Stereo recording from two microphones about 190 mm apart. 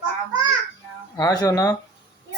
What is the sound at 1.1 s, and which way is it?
Speech, 20° left (ahead or behind).